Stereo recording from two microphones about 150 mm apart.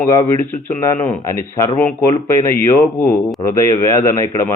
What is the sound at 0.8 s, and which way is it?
A man's voice, 15° left (ahead or behind).